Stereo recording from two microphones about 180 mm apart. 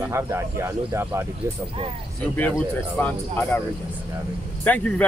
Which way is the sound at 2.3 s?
10° left (ahead or behind).